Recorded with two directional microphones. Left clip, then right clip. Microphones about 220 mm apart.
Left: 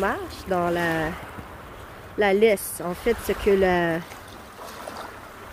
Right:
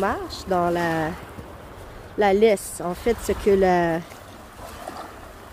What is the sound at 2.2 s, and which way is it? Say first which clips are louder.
Speech: right 1 dB; 5° right (ahead or behind).